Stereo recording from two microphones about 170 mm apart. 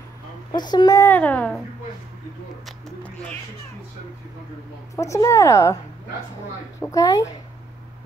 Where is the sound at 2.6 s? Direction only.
5° left (ahead or behind).